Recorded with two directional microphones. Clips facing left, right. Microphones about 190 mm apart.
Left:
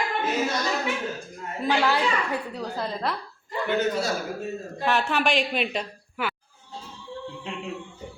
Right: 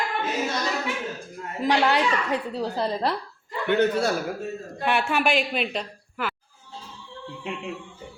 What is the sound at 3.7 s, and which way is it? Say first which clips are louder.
Speech: right 4 dB; 60° right (ahead or behind).